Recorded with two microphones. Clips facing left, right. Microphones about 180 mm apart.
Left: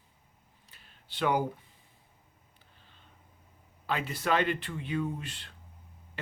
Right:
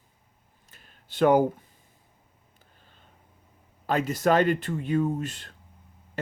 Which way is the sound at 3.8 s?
45° right (ahead or behind).